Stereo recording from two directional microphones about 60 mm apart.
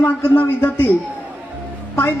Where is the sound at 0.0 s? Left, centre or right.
Left.